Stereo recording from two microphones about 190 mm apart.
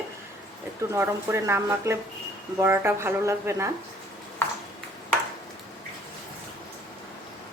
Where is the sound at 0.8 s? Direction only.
15° right (ahead or behind).